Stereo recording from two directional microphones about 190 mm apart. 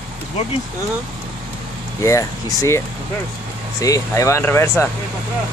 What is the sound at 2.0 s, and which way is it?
Speech, 15° left (ahead or behind).